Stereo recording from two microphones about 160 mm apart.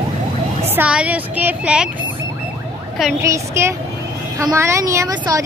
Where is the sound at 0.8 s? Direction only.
10° right (ahead or behind).